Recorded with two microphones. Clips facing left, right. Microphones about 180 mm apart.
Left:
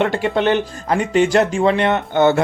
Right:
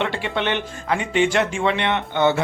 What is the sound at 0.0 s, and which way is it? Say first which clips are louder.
Speech: left 7 dB; 45° left (ahead or behind).